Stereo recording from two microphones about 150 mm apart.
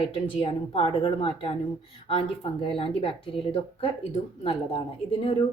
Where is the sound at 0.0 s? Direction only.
40° left (ahead or behind).